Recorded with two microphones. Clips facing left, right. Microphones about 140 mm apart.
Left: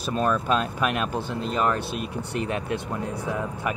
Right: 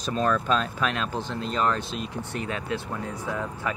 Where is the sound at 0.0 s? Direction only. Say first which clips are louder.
Left 1 dB; 10° left (ahead or behind).